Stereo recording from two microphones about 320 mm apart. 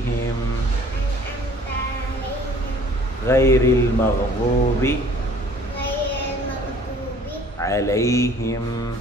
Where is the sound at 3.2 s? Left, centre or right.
Centre.